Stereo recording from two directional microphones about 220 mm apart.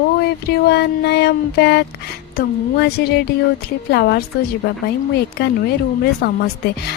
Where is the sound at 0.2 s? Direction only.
45° left (ahead or behind).